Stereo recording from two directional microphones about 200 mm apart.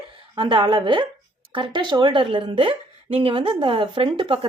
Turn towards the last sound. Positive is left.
turn(degrees=-25)  # may be behind; listen again after turning